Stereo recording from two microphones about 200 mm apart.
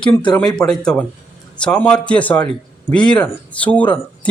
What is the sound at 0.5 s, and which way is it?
A man's voice, 5° left (ahead or behind).